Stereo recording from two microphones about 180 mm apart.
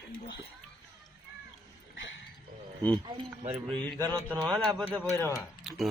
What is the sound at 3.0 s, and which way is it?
Speech, 25° right (ahead or behind).